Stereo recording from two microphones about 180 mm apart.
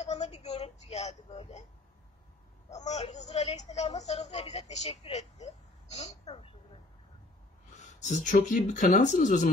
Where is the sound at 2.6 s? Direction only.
40° left (ahead or behind).